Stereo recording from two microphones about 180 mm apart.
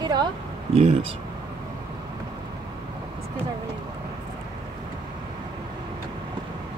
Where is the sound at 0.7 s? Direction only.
35° right (ahead or behind).